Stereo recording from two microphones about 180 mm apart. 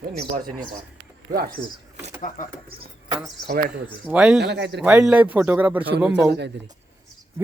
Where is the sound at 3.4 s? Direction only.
60° right (ahead or behind).